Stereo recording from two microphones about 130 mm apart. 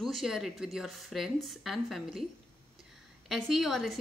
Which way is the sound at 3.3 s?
Centre (ahead or behind).